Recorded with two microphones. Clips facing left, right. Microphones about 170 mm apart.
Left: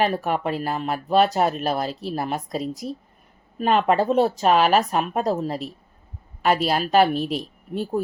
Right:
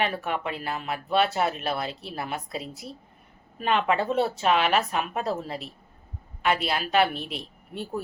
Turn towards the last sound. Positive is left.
turn(degrees=40)  # may be behind; listen again after turning